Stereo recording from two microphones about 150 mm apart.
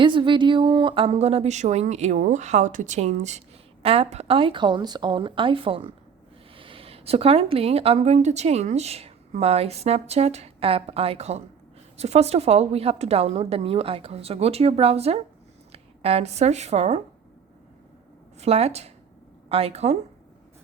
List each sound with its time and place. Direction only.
0.0 s speech: 35° right (ahead or behind)
18.3 s speech: 45° right (ahead or behind)